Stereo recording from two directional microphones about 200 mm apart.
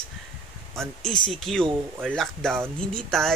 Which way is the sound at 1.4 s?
Centre (ahead or behind).